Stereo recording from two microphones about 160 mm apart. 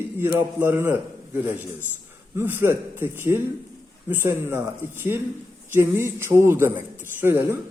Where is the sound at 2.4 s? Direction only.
15° right (ahead or behind).